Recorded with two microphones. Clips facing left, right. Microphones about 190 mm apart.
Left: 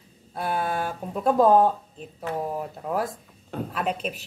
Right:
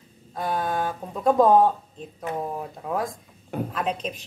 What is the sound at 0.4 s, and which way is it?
A woman's voice, 10° left (ahead or behind).